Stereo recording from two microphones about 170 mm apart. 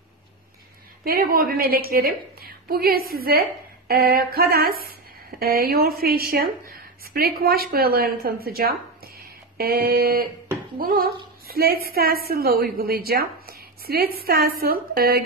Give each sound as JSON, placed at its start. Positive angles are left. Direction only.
{"t": 1.0, "sound": "a woman's voice", "side_deg": -60}